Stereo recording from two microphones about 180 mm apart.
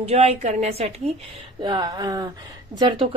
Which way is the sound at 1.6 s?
25° right (ahead or behind).